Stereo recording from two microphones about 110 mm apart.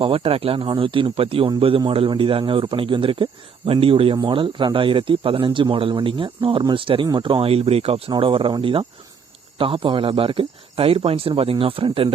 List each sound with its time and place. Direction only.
0.0 s a man's voice: 55° right (ahead or behind)
8.1 s a man's voice: 50° right (ahead or behind)